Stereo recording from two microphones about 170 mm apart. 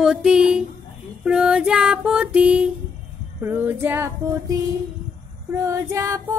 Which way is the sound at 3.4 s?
10° right (ahead or behind).